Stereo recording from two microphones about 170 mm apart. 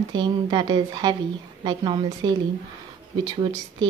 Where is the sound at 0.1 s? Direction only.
25° right (ahead or behind).